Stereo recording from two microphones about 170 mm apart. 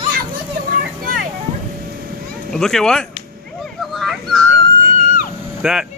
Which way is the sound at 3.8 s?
Centre (ahead or behind).